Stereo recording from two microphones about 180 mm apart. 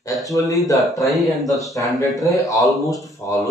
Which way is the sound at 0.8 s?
Centre (ahead or behind).